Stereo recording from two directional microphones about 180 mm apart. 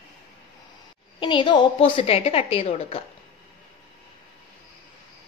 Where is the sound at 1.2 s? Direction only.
25° left (ahead or behind).